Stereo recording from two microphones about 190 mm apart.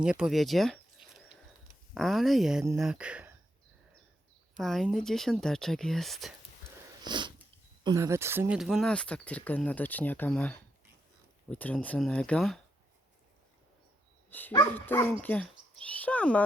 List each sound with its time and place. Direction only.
0.0 s speech: 5° right (ahead or behind)
4.5 s speech: centre (ahead or behind)
7.0 s sniff: 25° right (ahead or behind)
7.9 s speech: 15° right (ahead or behind); by 12.5 s 5° left (ahead or behind)
14.3 s speech: 10° left (ahead or behind)